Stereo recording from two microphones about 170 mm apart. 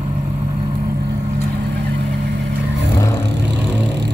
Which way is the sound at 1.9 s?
90° right.